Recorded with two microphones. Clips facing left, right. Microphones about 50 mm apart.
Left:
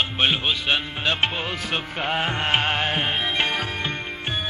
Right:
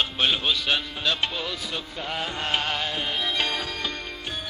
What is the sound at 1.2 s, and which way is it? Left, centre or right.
Music, left.